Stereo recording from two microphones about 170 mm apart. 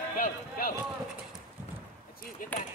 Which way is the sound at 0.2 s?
55° left (ahead or behind).